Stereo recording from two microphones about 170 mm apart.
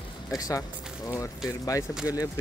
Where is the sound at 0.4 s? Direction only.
20° left (ahead or behind).